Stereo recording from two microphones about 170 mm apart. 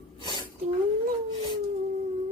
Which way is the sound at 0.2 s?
25° left (ahead or behind).